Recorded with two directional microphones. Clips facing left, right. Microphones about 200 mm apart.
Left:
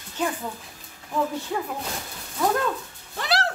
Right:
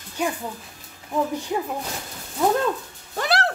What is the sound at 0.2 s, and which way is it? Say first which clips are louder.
Speech: right 1 dB; 10° right (ahead or behind).